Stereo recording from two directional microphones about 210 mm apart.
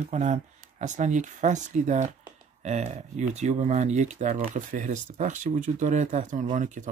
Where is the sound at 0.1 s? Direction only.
35° right (ahead or behind).